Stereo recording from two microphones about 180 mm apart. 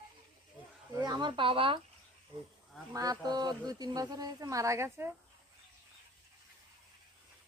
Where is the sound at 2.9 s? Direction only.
20° right (ahead or behind).